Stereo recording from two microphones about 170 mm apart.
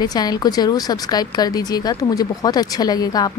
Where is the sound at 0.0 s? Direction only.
25° left (ahead or behind).